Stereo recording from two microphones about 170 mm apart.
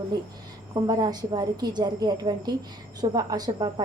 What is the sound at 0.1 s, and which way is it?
A woman's voice, 25° right (ahead or behind).